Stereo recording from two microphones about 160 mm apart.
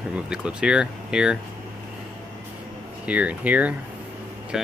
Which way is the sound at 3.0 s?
10° right (ahead or behind).